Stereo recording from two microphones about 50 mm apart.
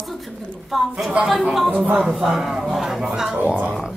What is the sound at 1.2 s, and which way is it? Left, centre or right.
Speech, right.